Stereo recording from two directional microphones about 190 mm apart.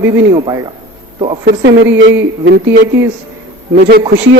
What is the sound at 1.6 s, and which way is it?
Speech, 70° right (ahead or behind).